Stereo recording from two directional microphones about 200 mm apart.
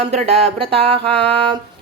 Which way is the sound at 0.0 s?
30° right (ahead or behind).